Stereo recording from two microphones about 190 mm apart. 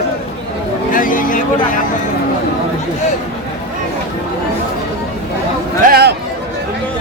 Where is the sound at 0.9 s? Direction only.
45° left (ahead or behind).